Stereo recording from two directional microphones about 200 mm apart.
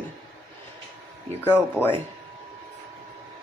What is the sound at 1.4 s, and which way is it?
Speech, 10° left (ahead or behind).